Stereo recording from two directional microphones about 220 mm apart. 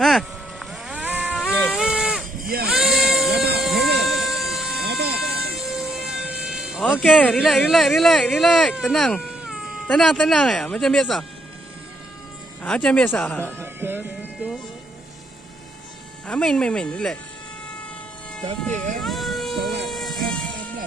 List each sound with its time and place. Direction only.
0.0 s insect: centre (ahead or behind)
1.8 s a sound: 5° right (ahead or behind)
2.3 s a sound: 40° right (ahead or behind)
2.7 s a sound: centre (ahead or behind)
4.7 s vehicle: 50° right (ahead or behind)
5.6 s speech: 5° right (ahead or behind)
12.6 s speech: 5° left (ahead or behind)
13.6 s music: 10° right (ahead or behind)
14.4 s speech: 5° right (ahead or behind)
16.3 s speech: 5° left (ahead or behind)
18.4 s speech: 30° right (ahead or behind)
18.9 s vehicle: centre (ahead or behind)